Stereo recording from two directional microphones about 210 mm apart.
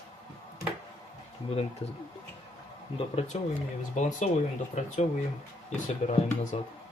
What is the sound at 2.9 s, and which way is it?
Speech, 30° left (ahead or behind).